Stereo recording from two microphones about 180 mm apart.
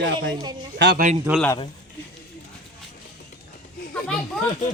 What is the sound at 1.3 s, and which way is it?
Speech, 10° right (ahead or behind).